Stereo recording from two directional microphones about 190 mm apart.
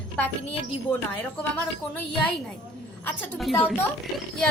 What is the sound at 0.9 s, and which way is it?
Speech, 25° left (ahead or behind).